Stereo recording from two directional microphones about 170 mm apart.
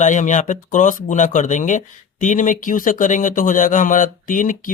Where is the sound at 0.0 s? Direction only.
45° left (ahead or behind).